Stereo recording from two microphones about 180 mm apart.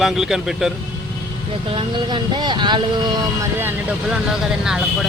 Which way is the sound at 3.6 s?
10° right (ahead or behind).